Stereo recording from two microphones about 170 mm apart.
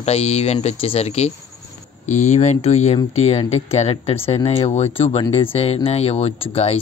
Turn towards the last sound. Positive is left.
turn(degrees=35)  # may be behind; listen again after turning